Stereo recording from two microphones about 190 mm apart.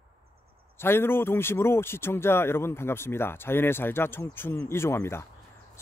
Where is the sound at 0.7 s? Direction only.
10° left (ahead or behind).